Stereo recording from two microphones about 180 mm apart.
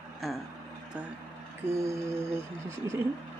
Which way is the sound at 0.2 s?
Centre (ahead or behind).